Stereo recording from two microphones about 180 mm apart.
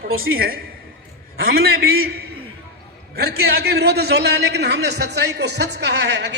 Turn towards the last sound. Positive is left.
turn(degrees=-75)  # may be behind; listen again after turning